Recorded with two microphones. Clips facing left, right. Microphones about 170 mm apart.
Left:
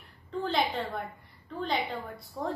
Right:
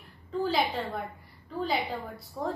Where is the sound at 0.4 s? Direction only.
Centre (ahead or behind).